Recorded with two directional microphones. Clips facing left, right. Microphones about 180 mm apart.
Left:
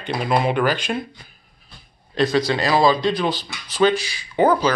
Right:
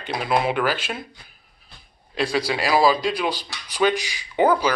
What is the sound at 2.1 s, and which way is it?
A man's voice, 10° right (ahead or behind).